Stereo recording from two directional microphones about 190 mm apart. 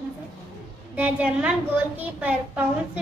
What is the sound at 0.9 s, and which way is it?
A woman's voice, 10° right (ahead or behind).